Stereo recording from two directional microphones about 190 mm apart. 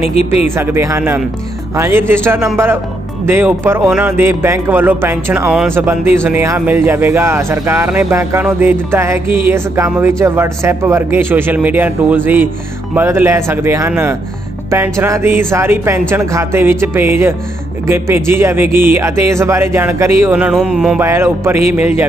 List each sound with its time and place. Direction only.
0.0 s speech: 30° left (ahead or behind)
0.6 s speech: 15° right (ahead or behind)